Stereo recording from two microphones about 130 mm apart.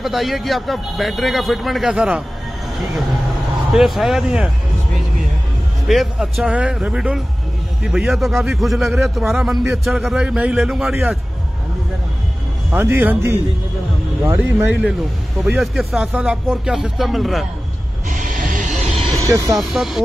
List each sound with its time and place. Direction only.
0.0 s a man's voice: centre (ahead or behind)
3.7 s a man's voice: centre (ahead or behind)
5.9 s a man's voice: centre (ahead or behind)
12.7 s speech: 15° right (ahead or behind)
15.4 s a man's voice: centre (ahead or behind)
18.0 s music: 80° right; by 18.9 s 65° right (ahead or behind)
19.1 s speech: 25° right (ahead or behind)
19.6 s a man's voice: centre (ahead or behind)